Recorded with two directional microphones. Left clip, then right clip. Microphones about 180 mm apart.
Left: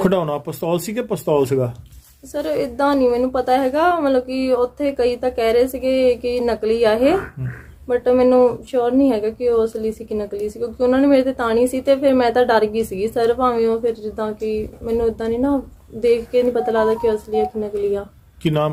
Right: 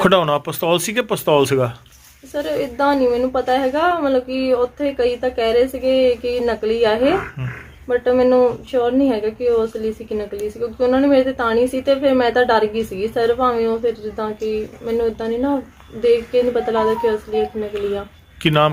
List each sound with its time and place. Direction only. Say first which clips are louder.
0.0 s speech: right 4 dB; 10° left (ahead or behind)
2.3 s speech: even; 30° left (ahead or behind)
18.4 s speech: right 4 dB; 5° left (ahead or behind)